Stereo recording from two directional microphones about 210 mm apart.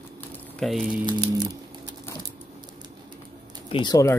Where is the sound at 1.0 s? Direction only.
20° right (ahead or behind).